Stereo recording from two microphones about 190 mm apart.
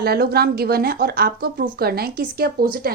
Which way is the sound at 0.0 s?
55° right (ahead or behind).